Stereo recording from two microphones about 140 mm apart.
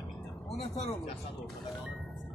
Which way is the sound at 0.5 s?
50° left (ahead or behind).